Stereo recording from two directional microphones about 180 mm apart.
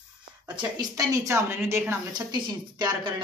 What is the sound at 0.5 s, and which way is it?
A woman's voice, 25° right (ahead or behind).